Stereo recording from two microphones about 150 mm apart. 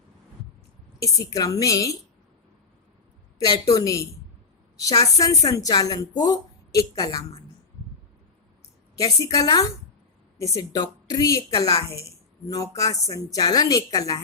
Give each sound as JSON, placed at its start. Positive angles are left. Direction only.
{"t": 0.9, "sound": "speech", "side_deg": 25}
{"t": 3.3, "sound": "a woman's voice", "side_deg": 25}
{"t": 9.0, "sound": "speech", "side_deg": 25}